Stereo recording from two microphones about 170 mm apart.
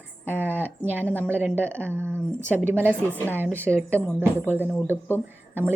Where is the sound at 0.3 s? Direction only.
10° right (ahead or behind).